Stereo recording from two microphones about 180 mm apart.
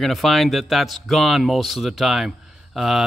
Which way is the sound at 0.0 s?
Centre (ahead or behind).